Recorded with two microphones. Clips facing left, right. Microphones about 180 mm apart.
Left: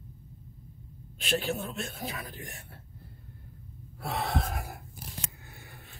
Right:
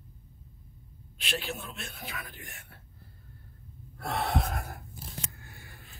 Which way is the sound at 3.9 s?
Centre (ahead or behind).